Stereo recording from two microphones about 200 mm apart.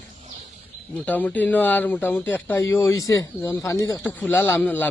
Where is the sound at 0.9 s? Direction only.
10° left (ahead or behind).